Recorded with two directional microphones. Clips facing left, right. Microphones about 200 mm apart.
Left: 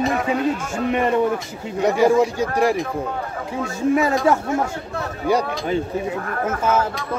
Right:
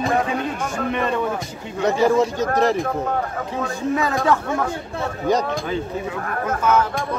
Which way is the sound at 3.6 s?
25° left (ahead or behind).